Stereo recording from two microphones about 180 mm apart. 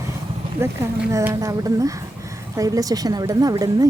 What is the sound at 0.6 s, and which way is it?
A woman's voice, 15° right (ahead or behind).